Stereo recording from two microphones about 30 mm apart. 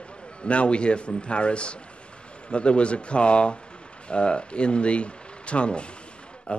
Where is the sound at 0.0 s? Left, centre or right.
Left.